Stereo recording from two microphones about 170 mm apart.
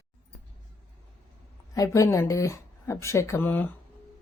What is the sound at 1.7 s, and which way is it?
Speech, 20° left (ahead or behind).